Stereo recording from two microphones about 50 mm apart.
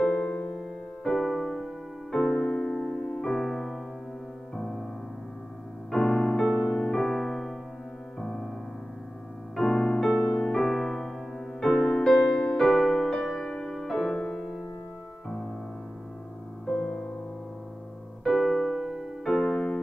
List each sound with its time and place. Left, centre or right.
0.5 s music: centre
5.9 s music: centre
7.1 s piano: centre
8.2 s music: centre
9.6 s music: centre
16.6 s music: centre
18.2 s music: centre
19.5 s keyboard: centre